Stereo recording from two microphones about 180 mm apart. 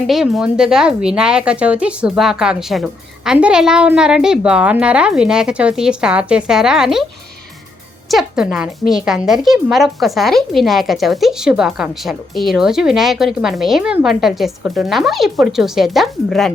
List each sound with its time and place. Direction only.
0.1 s a woman's voice: centre (ahead or behind)
8.0 s a woman's voice: centre (ahead or behind)